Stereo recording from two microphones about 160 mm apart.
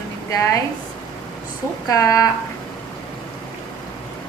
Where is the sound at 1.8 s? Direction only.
20° left (ahead or behind).